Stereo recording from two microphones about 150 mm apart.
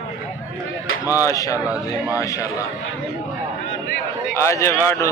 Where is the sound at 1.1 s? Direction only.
20° left (ahead or behind).